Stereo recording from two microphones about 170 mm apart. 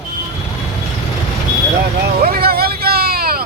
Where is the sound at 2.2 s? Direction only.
60° right (ahead or behind).